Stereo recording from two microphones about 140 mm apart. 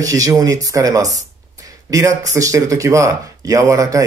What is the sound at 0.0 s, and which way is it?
Speech, 25° right (ahead or behind).